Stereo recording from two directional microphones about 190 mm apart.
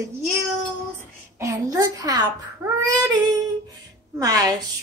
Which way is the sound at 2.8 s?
20° right (ahead or behind).